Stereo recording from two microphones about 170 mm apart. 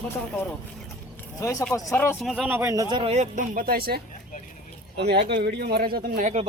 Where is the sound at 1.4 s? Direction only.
20° left (ahead or behind).